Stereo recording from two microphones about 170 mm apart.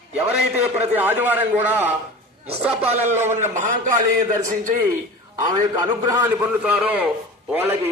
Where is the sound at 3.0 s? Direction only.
15° right (ahead or behind).